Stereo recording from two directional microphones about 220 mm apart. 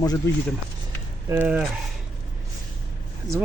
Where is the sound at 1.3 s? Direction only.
10° right (ahead or behind).